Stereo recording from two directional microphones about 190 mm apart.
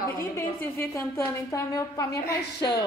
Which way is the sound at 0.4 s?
15° left (ahead or behind).